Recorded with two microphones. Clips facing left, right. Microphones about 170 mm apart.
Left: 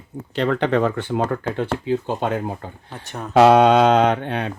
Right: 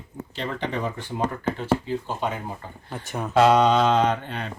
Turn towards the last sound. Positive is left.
turn(degrees=65)  # may be behind; listen again after turning